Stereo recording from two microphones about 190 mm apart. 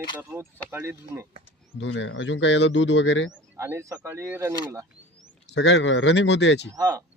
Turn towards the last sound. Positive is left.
turn(degrees=-20)  # may be behind; listen again after turning